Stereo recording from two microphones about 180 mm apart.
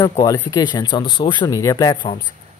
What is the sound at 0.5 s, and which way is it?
Speech, 25° left (ahead or behind).